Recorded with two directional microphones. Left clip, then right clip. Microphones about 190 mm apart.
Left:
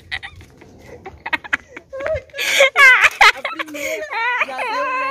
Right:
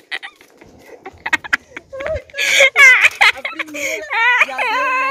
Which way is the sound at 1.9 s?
15° left (ahead or behind).